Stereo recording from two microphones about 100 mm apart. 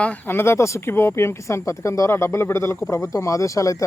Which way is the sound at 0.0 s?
15° left (ahead or behind).